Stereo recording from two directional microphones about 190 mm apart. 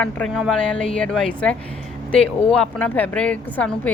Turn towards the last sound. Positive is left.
turn(degrees=5)  # may be behind; listen again after turning